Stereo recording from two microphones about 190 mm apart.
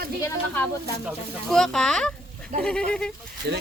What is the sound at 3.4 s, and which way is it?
Speech, 60° right (ahead or behind).